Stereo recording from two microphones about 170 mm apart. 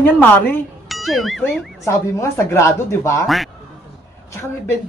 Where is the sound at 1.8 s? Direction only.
15° left (ahead or behind).